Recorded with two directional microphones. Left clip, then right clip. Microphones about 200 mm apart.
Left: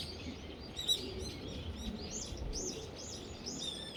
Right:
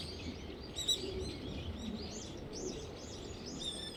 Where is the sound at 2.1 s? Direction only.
55° left (ahead or behind).